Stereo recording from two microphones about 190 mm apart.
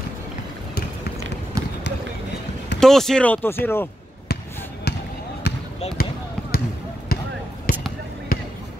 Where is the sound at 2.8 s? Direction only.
Centre (ahead or behind).